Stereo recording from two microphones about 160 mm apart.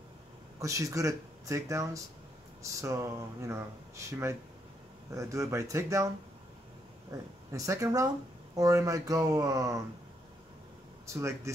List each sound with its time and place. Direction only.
0.6 s speech: 20° right (ahead or behind)
7.1 s speech: 20° right (ahead or behind)
11.1 s speech: 20° right (ahead or behind)